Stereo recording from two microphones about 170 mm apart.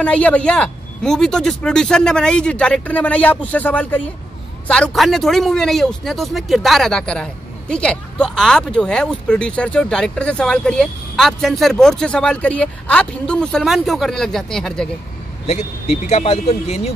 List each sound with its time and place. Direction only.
0.0 s a man's voice: 5° left (ahead or behind)
16.1 s speech: 40° left (ahead or behind)